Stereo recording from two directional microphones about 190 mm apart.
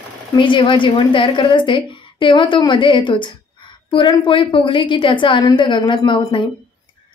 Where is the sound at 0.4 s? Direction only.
25° left (ahead or behind).